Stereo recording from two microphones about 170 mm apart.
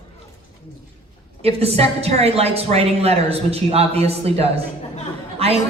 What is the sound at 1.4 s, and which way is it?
A woman's voice, 35° right (ahead or behind).